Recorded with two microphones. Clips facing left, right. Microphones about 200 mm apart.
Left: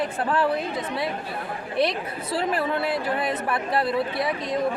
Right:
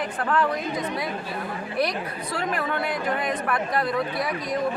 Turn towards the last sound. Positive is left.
turn(degrees=25)  # may be behind; listen again after turning